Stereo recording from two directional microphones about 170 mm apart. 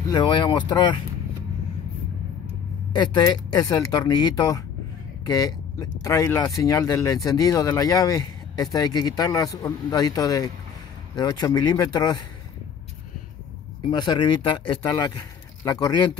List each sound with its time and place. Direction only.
0.1 s speech: 25° left (ahead or behind)
2.9 s speech: 25° left (ahead or behind)
13.8 s speech: 25° left (ahead or behind)